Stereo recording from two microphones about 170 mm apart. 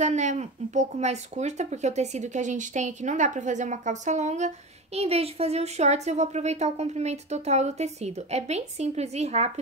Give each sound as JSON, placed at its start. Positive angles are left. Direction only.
{"t": 0.0, "sound": "speech", "side_deg": -45}